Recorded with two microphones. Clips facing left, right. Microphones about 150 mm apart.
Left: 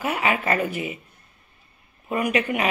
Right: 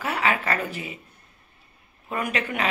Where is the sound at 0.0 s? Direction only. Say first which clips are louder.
Left 1 dB; 15° left (ahead or behind).